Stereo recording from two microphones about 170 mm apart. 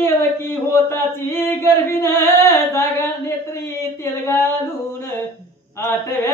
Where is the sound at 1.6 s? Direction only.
15° left (ahead or behind).